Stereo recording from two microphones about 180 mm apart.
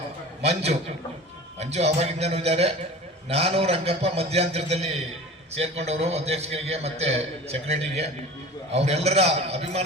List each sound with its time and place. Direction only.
0.4 s a man's voice: 35° right (ahead or behind)